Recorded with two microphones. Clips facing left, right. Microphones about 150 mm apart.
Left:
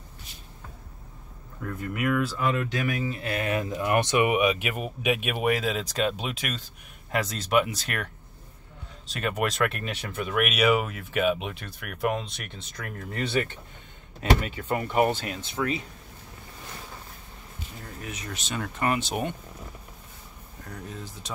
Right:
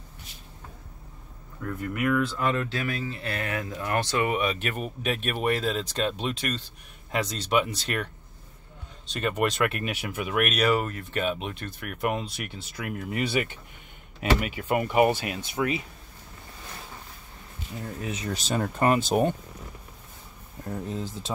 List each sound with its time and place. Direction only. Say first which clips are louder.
2.0 s speech: right 1 dB; 5° left (ahead or behind)
10.4 s speech: left 1 dB; 5° left (ahead or behind); by 15.8 s 10° right (ahead or behind)
18.0 s speech: right 5 dB; 30° right (ahead or behind)
20.6 s speech: right 7 dB; 25° right (ahead or behind)